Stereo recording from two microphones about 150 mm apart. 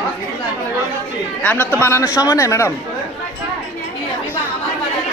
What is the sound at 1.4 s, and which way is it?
A man's voice, 10° left (ahead or behind).